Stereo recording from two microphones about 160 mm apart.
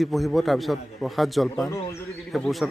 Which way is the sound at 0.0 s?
Centre (ahead or behind).